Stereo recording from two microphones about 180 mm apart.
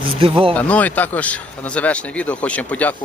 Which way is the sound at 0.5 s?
10° left (ahead or behind).